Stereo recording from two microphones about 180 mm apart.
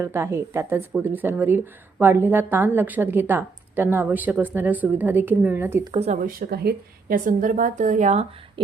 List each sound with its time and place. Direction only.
0.0 s speech: 15° right (ahead or behind)
5.9 s speech: 35° right (ahead or behind)
6.2 s a woman's voice: 60° right (ahead or behind); by 8.6 s 35° right (ahead or behind)